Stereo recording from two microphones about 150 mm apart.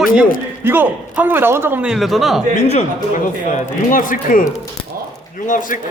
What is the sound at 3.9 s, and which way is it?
Speech, 65° left (ahead or behind).